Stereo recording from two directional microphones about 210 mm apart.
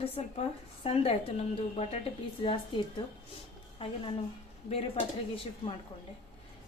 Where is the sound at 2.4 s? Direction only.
25° left (ahead or behind).